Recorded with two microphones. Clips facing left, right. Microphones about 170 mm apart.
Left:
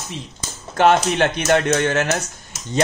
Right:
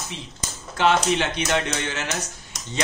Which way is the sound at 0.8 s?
50° left (ahead or behind).